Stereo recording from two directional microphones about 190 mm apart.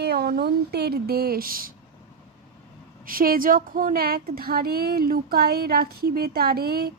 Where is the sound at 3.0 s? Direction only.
50° right (ahead or behind).